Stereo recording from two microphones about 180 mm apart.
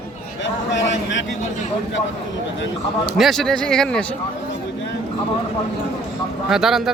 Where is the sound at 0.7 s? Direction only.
90° left.